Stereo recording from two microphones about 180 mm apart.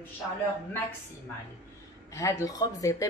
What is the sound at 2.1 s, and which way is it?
Speech, 15° left (ahead or behind).